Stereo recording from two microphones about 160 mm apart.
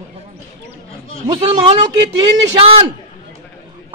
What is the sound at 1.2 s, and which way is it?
Speech, 35° right (ahead or behind).